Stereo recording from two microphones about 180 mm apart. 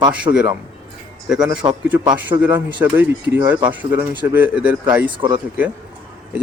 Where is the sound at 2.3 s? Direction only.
20° right (ahead or behind).